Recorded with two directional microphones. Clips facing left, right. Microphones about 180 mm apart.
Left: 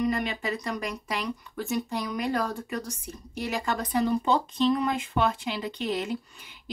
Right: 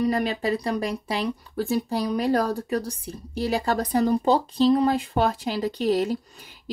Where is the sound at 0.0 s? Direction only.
35° right (ahead or behind).